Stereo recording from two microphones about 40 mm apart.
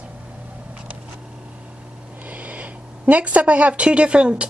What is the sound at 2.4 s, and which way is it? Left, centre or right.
Speech, right.